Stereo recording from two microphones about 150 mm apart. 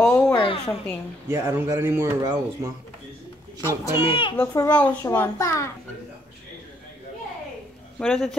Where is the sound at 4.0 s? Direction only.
35° left (ahead or behind).